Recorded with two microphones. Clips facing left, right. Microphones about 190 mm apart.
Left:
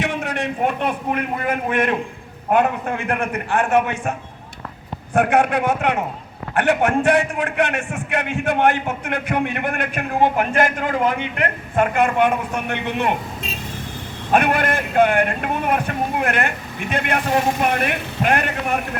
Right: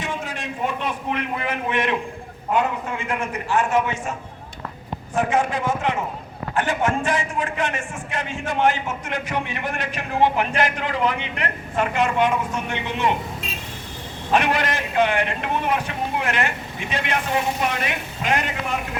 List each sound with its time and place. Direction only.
0.0 s a man's voice: 70° left (ahead or behind)
5.1 s a man's voice: 65° left (ahead or behind)
14.3 s a man's voice: 55° left (ahead or behind)
17.2 s a man's voice: 45° left (ahead or behind)